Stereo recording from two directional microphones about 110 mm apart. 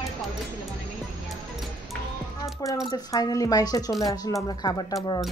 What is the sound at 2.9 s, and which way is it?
Speech, 35° left (ahead or behind).